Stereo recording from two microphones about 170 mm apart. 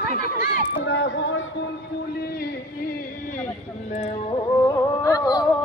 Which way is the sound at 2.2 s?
60° left (ahead or behind).